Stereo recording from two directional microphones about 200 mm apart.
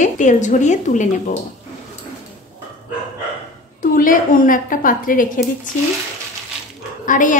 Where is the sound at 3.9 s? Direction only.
45° left (ahead or behind).